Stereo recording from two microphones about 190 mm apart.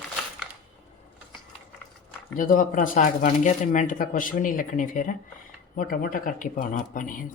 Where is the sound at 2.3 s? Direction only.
45° left (ahead or behind).